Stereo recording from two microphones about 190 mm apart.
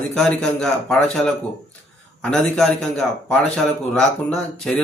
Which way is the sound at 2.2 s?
5° left (ahead or behind).